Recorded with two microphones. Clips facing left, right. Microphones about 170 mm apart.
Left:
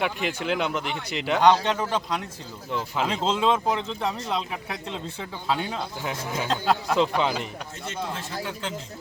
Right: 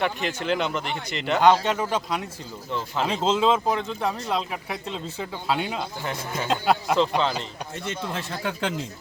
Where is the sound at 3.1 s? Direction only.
5° right (ahead or behind).